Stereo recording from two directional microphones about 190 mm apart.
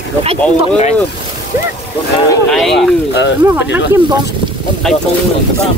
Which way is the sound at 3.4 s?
10° right (ahead or behind).